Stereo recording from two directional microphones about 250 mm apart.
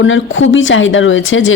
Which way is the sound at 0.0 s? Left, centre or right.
Left.